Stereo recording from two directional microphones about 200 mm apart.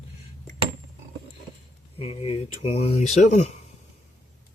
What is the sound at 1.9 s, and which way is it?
Speech, 30° left (ahead or behind).